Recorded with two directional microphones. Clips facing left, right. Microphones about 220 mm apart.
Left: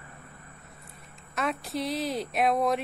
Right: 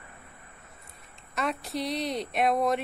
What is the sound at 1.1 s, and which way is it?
A woman's voice, centre (ahead or behind).